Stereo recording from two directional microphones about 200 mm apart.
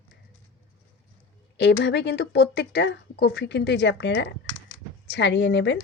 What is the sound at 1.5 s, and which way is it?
Speech, 60° left (ahead or behind).